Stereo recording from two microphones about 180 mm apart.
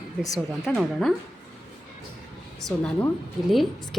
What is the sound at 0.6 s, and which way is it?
Speech, centre (ahead or behind).